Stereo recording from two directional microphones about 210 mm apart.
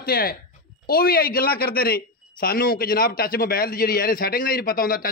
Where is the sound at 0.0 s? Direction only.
45° left (ahead or behind).